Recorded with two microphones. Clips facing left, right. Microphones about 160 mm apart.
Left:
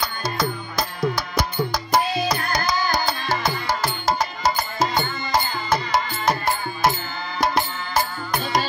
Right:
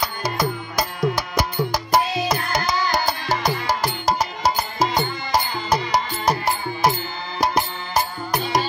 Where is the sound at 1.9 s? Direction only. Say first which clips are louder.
Right 1 dB; 25° right (ahead or behind).